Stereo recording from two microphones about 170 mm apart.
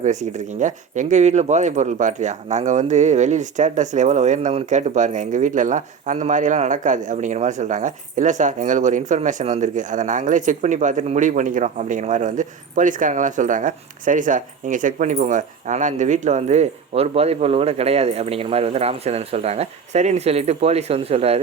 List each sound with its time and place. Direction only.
0.0 s speech: 45° right (ahead or behind)